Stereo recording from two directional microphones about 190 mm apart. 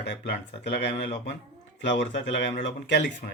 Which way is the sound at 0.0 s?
65° left (ahead or behind).